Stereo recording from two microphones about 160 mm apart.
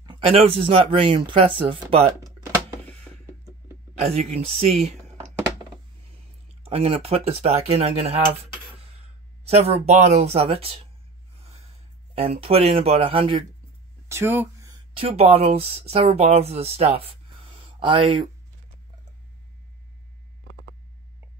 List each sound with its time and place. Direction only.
0.0 s speech: 30° right (ahead or behind)
4.0 s speech: 40° right (ahead or behind)
6.6 s speech: 40° right (ahead or behind)
9.8 s speech: 45° right (ahead or behind)
12.2 s speech: 40° right (ahead or behind)
14.0 s speech: 15° right (ahead or behind)
15.0 s speech: 35° right (ahead or behind)